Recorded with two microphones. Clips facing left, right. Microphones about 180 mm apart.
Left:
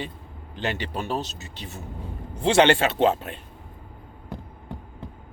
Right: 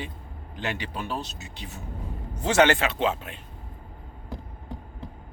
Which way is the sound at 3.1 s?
50° left (ahead or behind).